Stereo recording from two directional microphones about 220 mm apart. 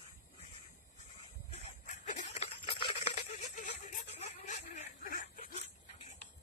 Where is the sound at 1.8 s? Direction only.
35° left (ahead or behind).